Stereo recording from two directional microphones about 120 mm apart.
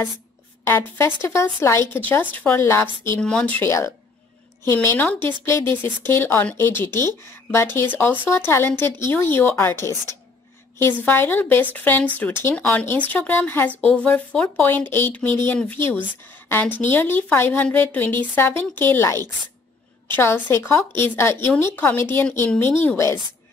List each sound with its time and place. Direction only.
0.7 s speech: 20° left (ahead or behind)
3.2 s speech: 10° left (ahead or behind)
4.8 s speech: 20° left (ahead or behind)
20.4 s speech: 20° left (ahead or behind)